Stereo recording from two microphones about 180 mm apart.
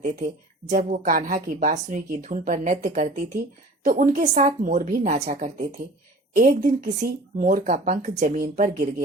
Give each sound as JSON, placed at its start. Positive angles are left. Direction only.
{"t": 0.7, "sound": "speech", "side_deg": -45}